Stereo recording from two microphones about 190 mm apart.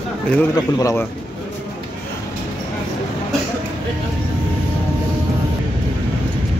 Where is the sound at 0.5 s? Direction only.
20° left (ahead or behind).